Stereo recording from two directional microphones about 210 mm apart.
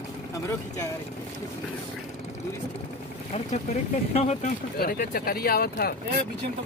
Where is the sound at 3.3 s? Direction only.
30° left (ahead or behind).